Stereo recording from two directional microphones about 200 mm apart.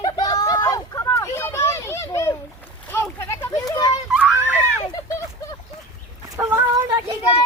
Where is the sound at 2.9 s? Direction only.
15° left (ahead or behind).